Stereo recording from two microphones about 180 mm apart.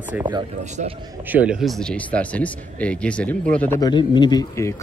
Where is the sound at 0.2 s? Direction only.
25° right (ahead or behind).